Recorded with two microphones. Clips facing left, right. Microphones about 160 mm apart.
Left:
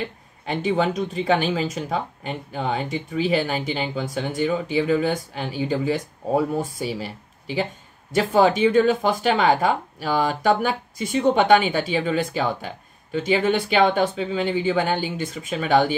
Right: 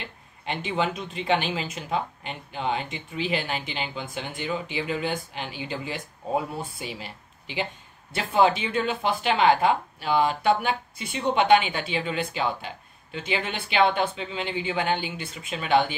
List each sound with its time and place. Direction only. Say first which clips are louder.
0.5 s speech: left 5 dB; 40° left (ahead or behind)